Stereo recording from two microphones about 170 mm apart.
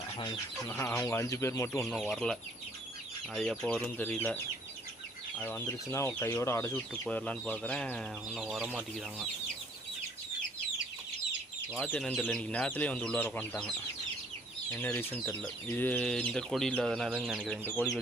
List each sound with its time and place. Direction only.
0.7 s speech: 15° left (ahead or behind)
1.8 s speech: 5° left (ahead or behind)
5.4 s speech: 10° left (ahead or behind)
8.4 s speech: 5° right (ahead or behind)
11.8 s speech: 10° left (ahead or behind)
17.1 s speech: 10° right (ahead or behind)